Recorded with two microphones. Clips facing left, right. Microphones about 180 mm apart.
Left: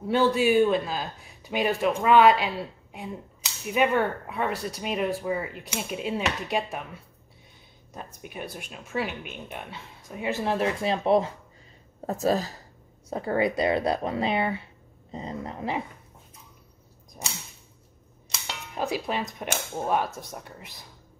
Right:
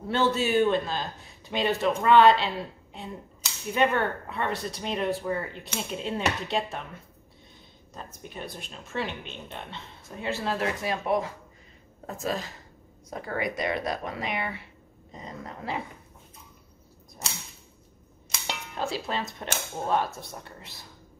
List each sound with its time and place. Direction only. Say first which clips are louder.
0.1 s speech: left 3 dB; 10° left (ahead or behind)
12.1 s speech: left 7 dB; 40° left (ahead or behind); by 15.8 s 20° left (ahead or behind)
18.8 s speech: left 3 dB; 15° left (ahead or behind)